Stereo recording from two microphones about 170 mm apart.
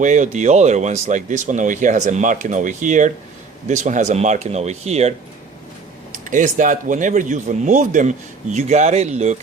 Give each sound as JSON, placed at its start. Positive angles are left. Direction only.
{"t": 0.0, "sound": "speech", "side_deg": -45}